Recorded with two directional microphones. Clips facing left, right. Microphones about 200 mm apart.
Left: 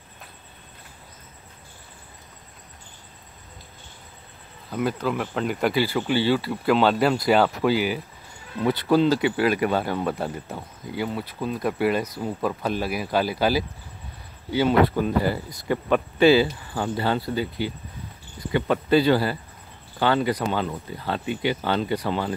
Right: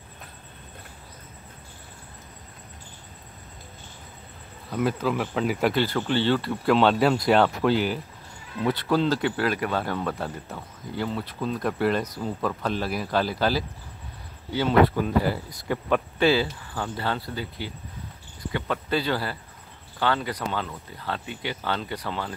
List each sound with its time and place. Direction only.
4.6 s speech: centre (ahead or behind)